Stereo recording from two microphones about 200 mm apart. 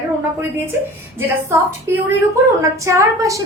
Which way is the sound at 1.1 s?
10° right (ahead or behind).